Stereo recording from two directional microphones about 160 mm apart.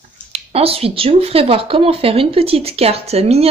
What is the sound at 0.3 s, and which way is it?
Speech, 40° right (ahead or behind).